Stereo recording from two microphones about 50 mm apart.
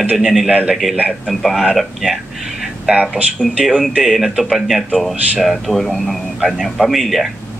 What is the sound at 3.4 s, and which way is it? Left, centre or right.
Speech, left.